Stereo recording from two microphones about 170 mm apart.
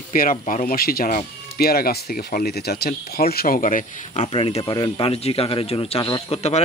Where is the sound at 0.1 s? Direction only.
55° left (ahead or behind).